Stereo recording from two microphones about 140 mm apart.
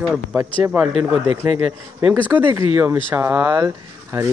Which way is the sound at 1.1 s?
45° left (ahead or behind).